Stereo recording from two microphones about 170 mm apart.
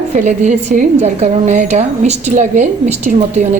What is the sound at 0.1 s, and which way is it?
A woman's voice, 45° right (ahead or behind).